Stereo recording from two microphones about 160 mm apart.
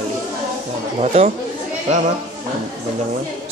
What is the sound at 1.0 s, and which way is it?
Speech, 40° right (ahead or behind).